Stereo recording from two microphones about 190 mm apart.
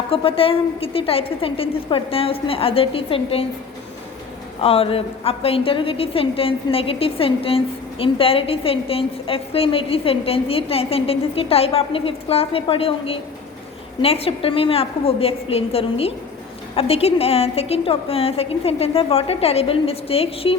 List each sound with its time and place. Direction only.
0.1 s a woman's voice: 30° left (ahead or behind)
4.6 s a woman's voice: 30° left (ahead or behind)